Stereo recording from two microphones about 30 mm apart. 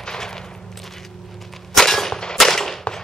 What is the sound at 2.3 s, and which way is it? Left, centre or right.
Gunshot, centre.